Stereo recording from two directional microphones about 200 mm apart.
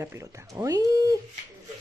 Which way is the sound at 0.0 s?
15° right (ahead or behind).